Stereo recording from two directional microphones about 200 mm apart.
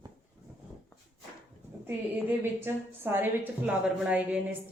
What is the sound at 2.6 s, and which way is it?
Speech, 10° right (ahead or behind).